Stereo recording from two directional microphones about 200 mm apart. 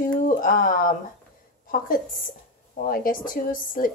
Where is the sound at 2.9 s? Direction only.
45° left (ahead or behind).